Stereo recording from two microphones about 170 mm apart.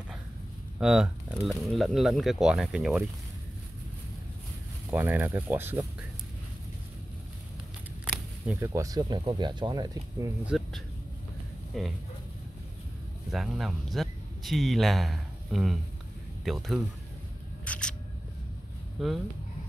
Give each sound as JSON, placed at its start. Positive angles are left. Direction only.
{"t": 0.7, "sound": "speech", "side_deg": -5}
{"t": 4.9, "sound": "speech", "side_deg": -10}
{"t": 8.5, "sound": "speech", "side_deg": -20}
{"t": 10.4, "sound": "speech", "side_deg": -5}
{"t": 13.3, "sound": "speech", "side_deg": 0}
{"t": 17.6, "sound": "single-lens reflex camera", "side_deg": 5}
{"t": 18.9, "sound": "speech", "side_deg": 0}